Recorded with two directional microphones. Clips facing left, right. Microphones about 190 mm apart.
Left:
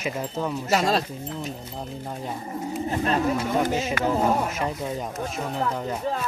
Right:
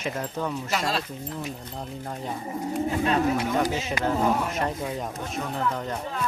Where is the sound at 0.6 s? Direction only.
40° left (ahead or behind).